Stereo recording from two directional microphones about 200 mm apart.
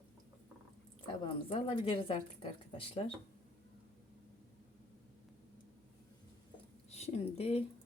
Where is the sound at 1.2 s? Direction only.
25° left (ahead or behind).